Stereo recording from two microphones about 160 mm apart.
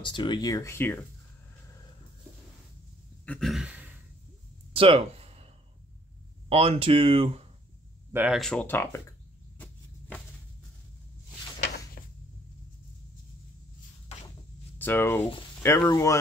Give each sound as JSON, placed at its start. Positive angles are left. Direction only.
{"t": 0.0, "sound": "speech", "side_deg": 30}
{"t": 3.3, "sound": "a sound", "side_deg": 0}
{"t": 4.7, "sound": "a sound", "side_deg": -35}
{"t": 6.5, "sound": "speech", "side_deg": -35}
{"t": 8.1, "sound": "speech", "side_deg": -10}
{"t": 8.4, "sound": "speech", "side_deg": 5}
{"t": 9.6, "sound": "vehicle", "side_deg": 10}
{"t": 14.8, "sound": "speech", "side_deg": 10}